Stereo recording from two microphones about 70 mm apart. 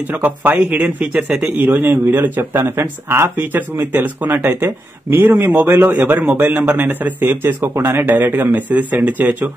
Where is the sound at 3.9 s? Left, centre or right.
Right.